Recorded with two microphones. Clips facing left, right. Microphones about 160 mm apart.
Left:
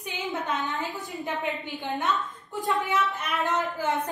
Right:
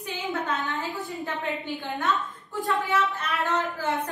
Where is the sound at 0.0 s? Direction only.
20° left (ahead or behind).